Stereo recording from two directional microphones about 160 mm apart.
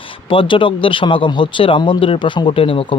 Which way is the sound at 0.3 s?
30° left (ahead or behind).